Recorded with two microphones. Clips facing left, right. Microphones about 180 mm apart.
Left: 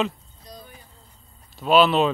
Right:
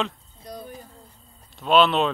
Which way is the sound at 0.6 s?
40° right (ahead or behind).